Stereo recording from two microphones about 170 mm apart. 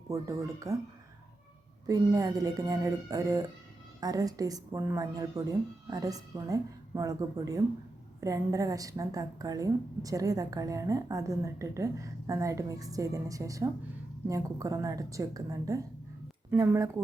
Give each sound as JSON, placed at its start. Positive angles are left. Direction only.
{"t": 0.1, "sound": "a woman's voice", "side_deg": -20}
{"t": 1.9, "sound": "a woman's voice", "side_deg": -20}